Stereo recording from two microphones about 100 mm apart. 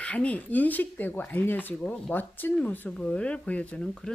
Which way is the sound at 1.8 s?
10° left (ahead or behind).